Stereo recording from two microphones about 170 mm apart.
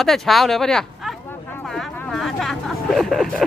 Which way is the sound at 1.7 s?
Centre (ahead or behind).